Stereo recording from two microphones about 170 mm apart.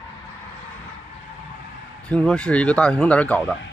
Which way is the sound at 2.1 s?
5° left (ahead or behind).